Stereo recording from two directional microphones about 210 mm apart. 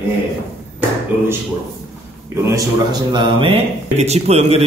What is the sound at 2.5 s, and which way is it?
Speech, 20° right (ahead or behind).